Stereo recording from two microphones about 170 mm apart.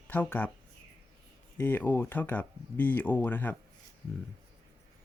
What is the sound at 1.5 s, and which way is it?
Speech, 10° left (ahead or behind).